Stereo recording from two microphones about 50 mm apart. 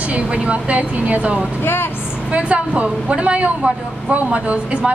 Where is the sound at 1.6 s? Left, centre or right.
Left.